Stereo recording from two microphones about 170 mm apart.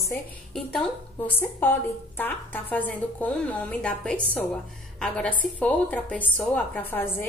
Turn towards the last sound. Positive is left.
turn(degrees=10)  # may be behind; listen again after turning